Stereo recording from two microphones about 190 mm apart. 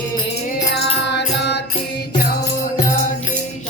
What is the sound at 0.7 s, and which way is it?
Music, 60° left (ahead or behind).